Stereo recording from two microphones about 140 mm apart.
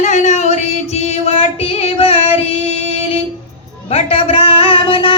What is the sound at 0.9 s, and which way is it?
Music, 50° left (ahead or behind).